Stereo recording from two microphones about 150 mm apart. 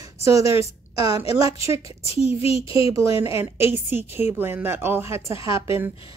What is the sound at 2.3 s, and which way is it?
Speech, 40° left (ahead or behind).